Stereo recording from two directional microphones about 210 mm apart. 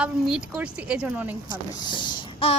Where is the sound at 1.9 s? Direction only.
20° left (ahead or behind).